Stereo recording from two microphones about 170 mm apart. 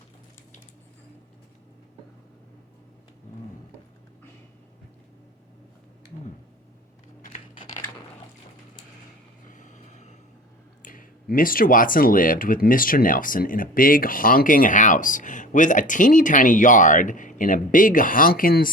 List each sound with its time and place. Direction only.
9.5 s vehicle: 45° left (ahead or behind)
10.8 s speech: 55° left (ahead or behind)